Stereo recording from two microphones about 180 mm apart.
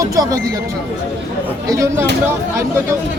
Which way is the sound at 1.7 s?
15° right (ahead or behind).